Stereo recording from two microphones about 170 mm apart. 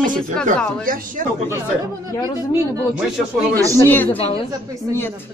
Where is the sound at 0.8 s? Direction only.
55° right (ahead or behind).